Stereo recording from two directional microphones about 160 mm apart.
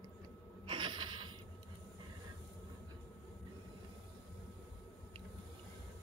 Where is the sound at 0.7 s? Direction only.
30° right (ahead or behind).